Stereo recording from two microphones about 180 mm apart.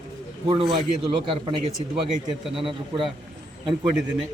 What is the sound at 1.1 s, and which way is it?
Speech, 30° right (ahead or behind).